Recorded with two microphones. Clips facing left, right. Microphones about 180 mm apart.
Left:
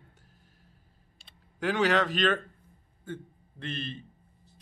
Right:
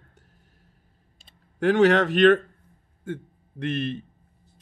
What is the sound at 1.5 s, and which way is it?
Speech, 70° right (ahead or behind).